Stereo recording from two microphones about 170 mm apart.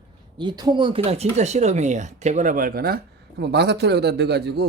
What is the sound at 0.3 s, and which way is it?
Speech, 25° right (ahead or behind).